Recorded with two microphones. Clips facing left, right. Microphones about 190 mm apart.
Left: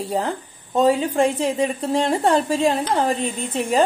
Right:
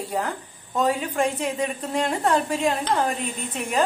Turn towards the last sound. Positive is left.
turn(degrees=30)  # may be behind; listen again after turning